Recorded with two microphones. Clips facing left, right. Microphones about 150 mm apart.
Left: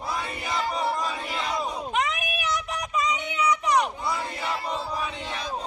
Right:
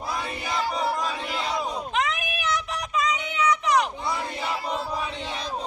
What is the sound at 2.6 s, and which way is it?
Child singing, 10° left (ahead or behind).